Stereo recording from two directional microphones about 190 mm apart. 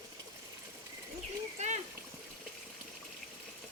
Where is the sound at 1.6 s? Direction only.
35° right (ahead or behind).